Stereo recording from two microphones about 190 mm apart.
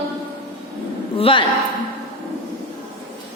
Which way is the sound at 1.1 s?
30° left (ahead or behind).